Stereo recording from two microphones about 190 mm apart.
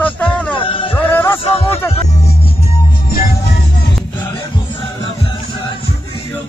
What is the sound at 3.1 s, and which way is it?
Music, 55° left (ahead or behind).